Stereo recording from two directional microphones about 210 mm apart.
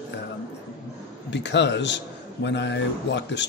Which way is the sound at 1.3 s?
55° left (ahead or behind).